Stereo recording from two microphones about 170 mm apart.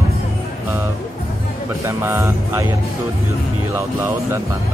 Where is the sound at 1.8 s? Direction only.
15° right (ahead or behind).